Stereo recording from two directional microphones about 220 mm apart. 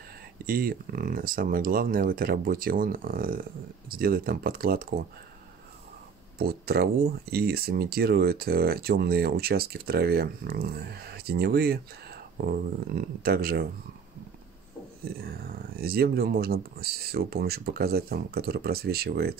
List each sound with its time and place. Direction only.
0.5 s speech: 40° right (ahead or behind)
6.3 s speech: 45° right (ahead or behind)
15.4 s speech: 45° right (ahead or behind)